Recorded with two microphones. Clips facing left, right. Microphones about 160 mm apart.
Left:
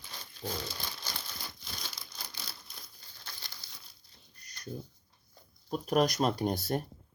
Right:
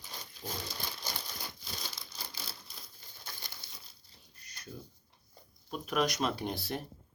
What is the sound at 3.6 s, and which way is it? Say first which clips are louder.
Crumpling: right 1 dB; 55° right (ahead or behind).